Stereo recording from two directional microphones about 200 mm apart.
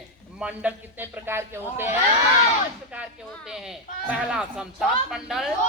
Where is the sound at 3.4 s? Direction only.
5° right (ahead or behind).